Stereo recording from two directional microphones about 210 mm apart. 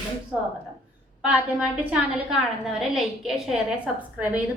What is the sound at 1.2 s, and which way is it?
A woman's voice, 5° right (ahead or behind).